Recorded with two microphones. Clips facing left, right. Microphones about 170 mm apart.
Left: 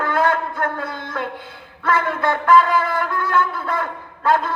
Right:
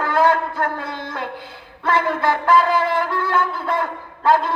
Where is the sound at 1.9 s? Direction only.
30° right (ahead or behind).